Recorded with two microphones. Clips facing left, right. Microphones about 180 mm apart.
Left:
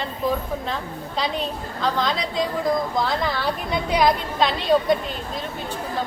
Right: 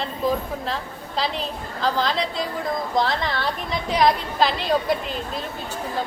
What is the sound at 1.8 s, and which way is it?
Speech, 30° right (ahead or behind).